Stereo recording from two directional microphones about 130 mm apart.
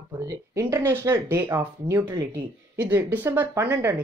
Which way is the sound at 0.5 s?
25° right (ahead or behind).